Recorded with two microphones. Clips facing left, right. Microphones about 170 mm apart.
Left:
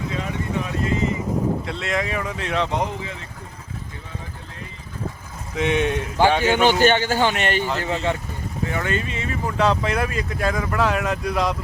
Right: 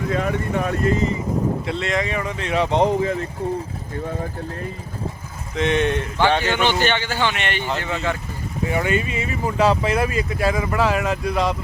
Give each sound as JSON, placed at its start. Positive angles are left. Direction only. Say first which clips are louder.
{"t": 0.1, "sound": "speech", "louder": "right 7 dB", "side_deg": -55}
{"t": 1.6, "sound": "speech", "louder": "right 2 dB", "side_deg": 0}
{"t": 2.6, "sound": "speech", "louder": "right 6 dB", "side_deg": -25}
{"t": 3.0, "sound": "speech", "louder": "right 12 dB", "side_deg": -45}
{"t": 5.5, "sound": "speech", "louder": "right 1 dB", "side_deg": 10}
{"t": 6.6, "sound": "speech", "louder": "left 3 dB", "side_deg": 45}
{"t": 8.7, "sound": "speech", "louder": "right 5 dB", "side_deg": -10}